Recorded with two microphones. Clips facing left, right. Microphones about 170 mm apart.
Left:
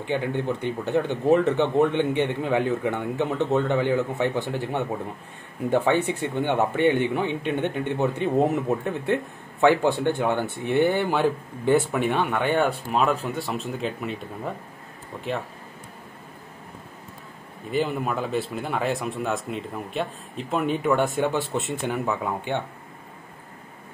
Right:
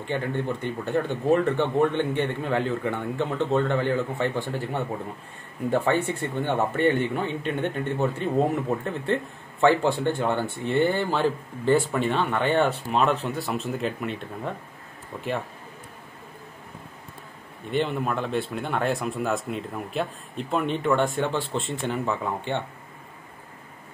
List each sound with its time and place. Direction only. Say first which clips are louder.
0.0 s speech: left 2 dB; 15° left (ahead or behind); by 15.3 s centre (ahead or behind)
17.6 s speech: even; 5° left (ahead or behind)